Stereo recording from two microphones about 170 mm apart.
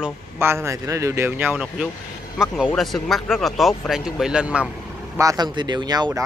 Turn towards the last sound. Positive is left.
turn(degrees=-25)  # may be behind; listen again after turning